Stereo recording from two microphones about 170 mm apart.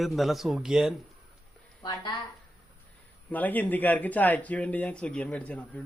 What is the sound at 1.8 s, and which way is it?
Speech, 25° left (ahead or behind).